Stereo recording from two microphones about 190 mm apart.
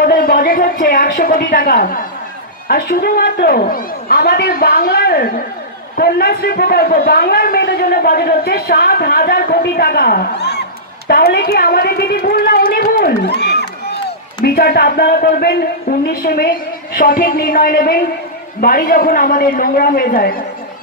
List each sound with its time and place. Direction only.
0.0 s a woman's voice: 50° left (ahead or behind)